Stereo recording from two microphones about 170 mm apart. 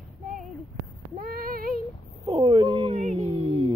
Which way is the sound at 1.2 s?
60° right (ahead or behind).